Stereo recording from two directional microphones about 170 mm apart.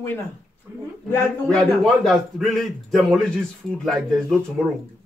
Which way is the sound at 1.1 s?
5° left (ahead or behind).